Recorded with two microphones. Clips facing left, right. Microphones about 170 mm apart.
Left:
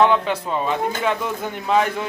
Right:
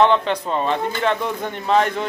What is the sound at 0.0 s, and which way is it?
A man's voice, 5° left (ahead or behind).